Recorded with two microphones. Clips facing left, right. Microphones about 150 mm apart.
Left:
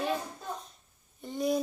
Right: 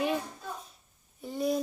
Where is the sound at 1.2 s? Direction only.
5° right (ahead or behind).